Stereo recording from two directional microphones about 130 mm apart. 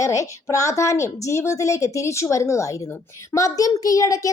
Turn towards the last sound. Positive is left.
turn(degrees=25)  # may be behind; listen again after turning